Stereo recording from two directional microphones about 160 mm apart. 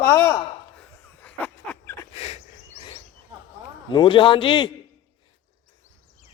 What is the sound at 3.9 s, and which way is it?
Speech, 30° left (ahead or behind).